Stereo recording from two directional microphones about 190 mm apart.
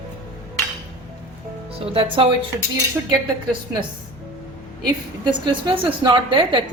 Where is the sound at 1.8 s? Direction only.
30° right (ahead or behind).